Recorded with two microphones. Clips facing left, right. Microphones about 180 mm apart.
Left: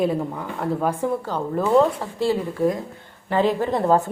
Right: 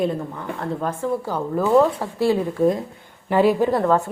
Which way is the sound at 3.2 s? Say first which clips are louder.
Right 3 dB; 10° right (ahead or behind).